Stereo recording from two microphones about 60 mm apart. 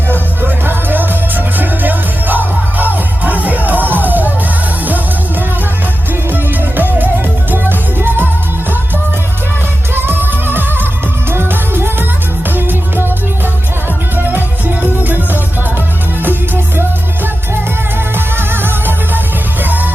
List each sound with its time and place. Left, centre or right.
0.6 s music: right
6.3 s music: right
9.9 s music: right
18.3 s music: right